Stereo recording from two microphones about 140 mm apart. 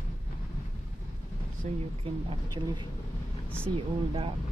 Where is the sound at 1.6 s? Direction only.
55° right (ahead or behind).